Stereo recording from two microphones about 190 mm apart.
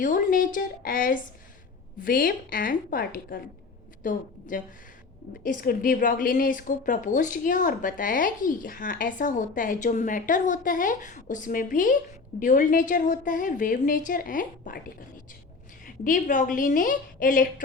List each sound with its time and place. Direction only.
0.0 s a woman's voice: 45° left (ahead or behind)
16.0 s a woman's voice: 45° left (ahead or behind)